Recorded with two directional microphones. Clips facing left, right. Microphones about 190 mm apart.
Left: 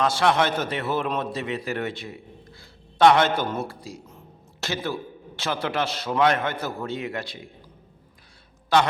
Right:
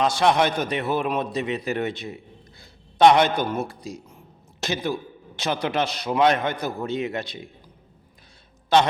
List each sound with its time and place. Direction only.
0.0 s a man's voice: 20° right (ahead or behind)
8.7 s a man's voice: 20° right (ahead or behind)